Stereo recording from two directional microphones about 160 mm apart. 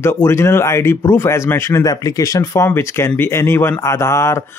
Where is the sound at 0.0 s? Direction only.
15° left (ahead or behind).